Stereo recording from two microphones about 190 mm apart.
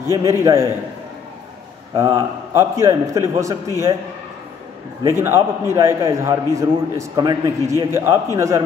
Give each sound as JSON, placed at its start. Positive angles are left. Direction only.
{"t": 0.2, "sound": "a man's voice", "side_deg": -15}
{"t": 2.0, "sound": "a man's voice", "side_deg": -15}
{"t": 5.0, "sound": "a man's voice", "side_deg": -15}